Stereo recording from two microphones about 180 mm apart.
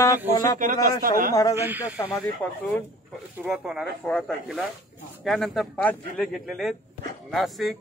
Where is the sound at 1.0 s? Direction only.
50° right (ahead or behind).